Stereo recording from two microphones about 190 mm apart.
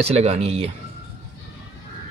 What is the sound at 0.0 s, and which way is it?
Speech, 35° right (ahead or behind).